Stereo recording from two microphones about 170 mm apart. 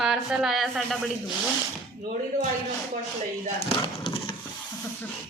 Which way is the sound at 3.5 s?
30° left (ahead or behind).